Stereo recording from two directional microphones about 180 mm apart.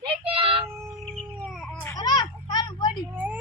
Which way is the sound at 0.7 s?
5° left (ahead or behind).